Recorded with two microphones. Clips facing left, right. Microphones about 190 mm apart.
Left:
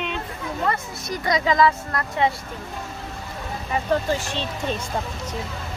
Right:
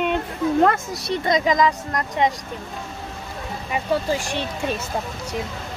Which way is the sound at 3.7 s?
15° right (ahead or behind).